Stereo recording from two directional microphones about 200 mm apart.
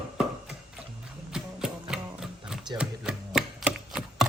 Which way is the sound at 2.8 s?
5° right (ahead or behind).